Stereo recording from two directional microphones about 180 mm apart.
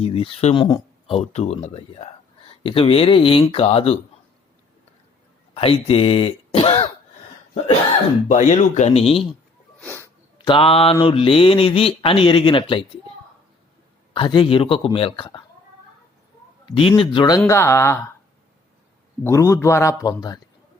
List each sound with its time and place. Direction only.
0.0 s speech: 30° left (ahead or behind)
5.5 s speech: 30° left (ahead or behind)
8.3 s speech: 40° left (ahead or behind)
9.8 s sneeze: 15° left (ahead or behind)
10.3 s speech: 25° left (ahead or behind)
14.1 s speech: 25° left (ahead or behind)
16.6 s speech: 30° left (ahead or behind)
17.4 s a man's voice: 15° left (ahead or behind)
19.2 s a man's voice: 15° left (ahead or behind)